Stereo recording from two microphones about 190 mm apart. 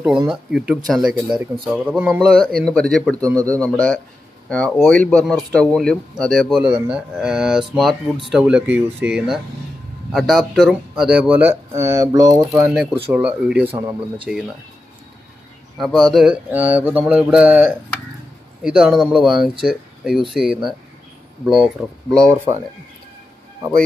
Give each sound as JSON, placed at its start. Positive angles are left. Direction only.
{"t": 0.3, "sound": "speech", "side_deg": -5}
{"t": 13.7, "sound": "speech", "side_deg": -20}
{"t": 15.8, "sound": "speech", "side_deg": 0}